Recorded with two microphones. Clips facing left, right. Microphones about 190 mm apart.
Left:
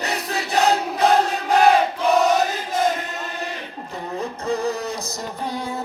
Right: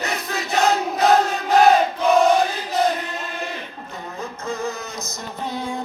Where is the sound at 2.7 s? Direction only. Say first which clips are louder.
Right 1 dB; 45° left (ahead or behind).